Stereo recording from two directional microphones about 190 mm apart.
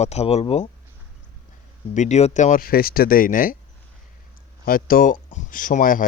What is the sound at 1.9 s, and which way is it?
Speech, 40° left (ahead or behind).